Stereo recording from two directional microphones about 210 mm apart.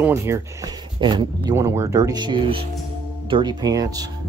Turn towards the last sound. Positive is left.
turn(degrees=-20)  # may be behind; listen again after turning